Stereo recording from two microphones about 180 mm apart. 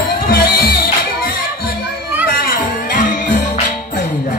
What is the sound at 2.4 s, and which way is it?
Music, 50° left (ahead or behind).